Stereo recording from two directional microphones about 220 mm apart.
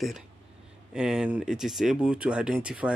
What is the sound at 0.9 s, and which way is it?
Speech, 5° right (ahead or behind).